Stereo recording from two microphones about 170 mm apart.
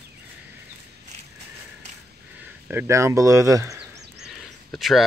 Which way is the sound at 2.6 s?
15° right (ahead or behind).